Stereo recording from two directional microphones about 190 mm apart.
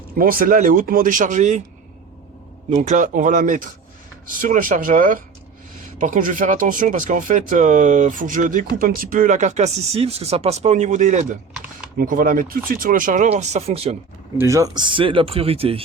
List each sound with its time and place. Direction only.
0.2 s speech: 50° right (ahead or behind)
2.6 s speech: 40° right (ahead or behind)
14.3 s speech: 15° right (ahead or behind)